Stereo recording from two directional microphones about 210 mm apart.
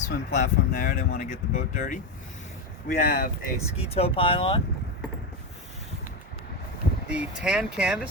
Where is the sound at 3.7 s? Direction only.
30° left (ahead or behind).